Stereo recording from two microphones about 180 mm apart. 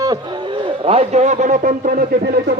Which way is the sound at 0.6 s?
35° right (ahead or behind).